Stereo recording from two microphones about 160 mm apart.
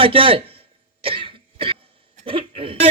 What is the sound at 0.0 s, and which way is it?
Speech, 35° right (ahead or behind).